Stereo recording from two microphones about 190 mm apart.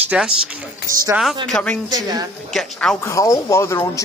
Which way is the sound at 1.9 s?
20° right (ahead or behind).